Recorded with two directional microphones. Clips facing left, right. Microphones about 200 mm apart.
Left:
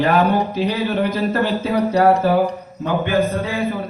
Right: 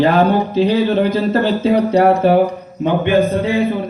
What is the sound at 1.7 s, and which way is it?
Speech, 25° right (ahead or behind).